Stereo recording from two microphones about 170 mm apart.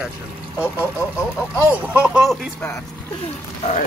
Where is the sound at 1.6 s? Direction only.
10° right (ahead or behind).